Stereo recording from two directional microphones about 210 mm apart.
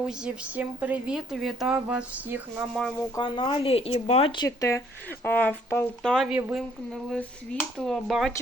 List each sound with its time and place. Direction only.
0.0 s speech: 5° right (ahead or behind)
3.2 s speech: 25° left (ahead or behind); by 8.3 s centre (ahead or behind)